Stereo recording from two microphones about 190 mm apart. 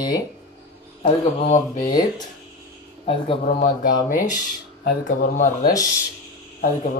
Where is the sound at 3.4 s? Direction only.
40° left (ahead or behind).